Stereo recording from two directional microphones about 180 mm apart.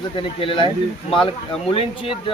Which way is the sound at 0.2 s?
30° left (ahead or behind).